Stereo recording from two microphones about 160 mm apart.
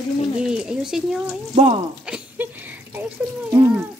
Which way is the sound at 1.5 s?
40° right (ahead or behind).